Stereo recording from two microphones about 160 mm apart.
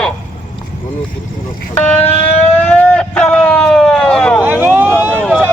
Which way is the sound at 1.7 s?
10° left (ahead or behind).